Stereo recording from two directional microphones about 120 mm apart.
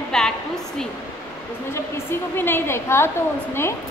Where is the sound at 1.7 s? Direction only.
20° left (ahead or behind).